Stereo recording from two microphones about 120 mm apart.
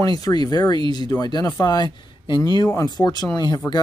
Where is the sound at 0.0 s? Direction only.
35° left (ahead or behind).